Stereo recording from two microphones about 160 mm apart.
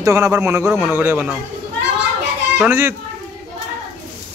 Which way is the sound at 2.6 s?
15° right (ahead or behind).